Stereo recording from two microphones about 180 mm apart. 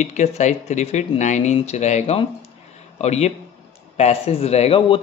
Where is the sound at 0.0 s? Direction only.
40° left (ahead or behind).